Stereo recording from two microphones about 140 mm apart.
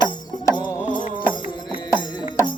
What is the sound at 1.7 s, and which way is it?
Music, 35° left (ahead or behind).